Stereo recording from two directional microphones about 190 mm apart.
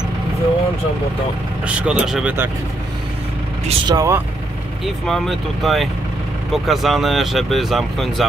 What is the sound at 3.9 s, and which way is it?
Speech, 20° right (ahead or behind).